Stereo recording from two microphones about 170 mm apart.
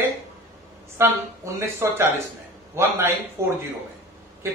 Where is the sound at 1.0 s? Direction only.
15° right (ahead or behind).